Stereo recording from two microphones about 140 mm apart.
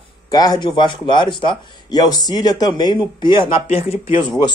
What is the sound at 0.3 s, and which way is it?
A man's voice, 30° left (ahead or behind).